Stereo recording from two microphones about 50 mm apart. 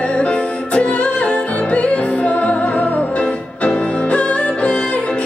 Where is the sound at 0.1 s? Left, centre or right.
Left.